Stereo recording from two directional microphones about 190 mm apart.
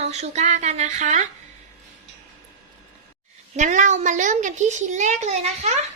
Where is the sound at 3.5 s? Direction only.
40° right (ahead or behind).